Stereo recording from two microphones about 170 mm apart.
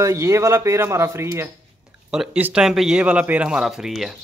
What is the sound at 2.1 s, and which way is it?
Speech, 5° right (ahead or behind).